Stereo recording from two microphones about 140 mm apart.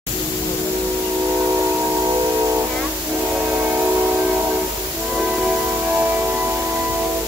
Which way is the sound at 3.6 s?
15° right (ahead or behind).